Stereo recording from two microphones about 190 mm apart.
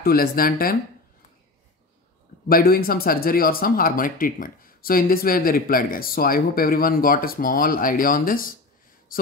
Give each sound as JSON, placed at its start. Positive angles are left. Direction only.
{"t": 0.0, "sound": "speech", "side_deg": 50}
{"t": 2.4, "sound": "speech", "side_deg": 50}
{"t": 9.1, "sound": "a sound", "side_deg": 50}